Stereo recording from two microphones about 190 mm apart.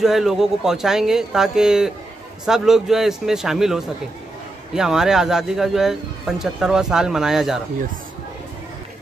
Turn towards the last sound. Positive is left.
turn(degrees=0)  # may be behind; listen again after turning